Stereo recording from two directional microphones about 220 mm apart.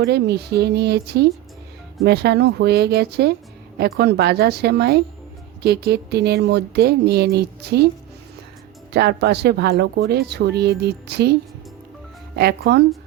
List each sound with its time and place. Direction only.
0.0 s speech: 50° right (ahead or behind)
8.9 s speech: 50° right (ahead or behind)
12.4 s speech: 45° right (ahead or behind)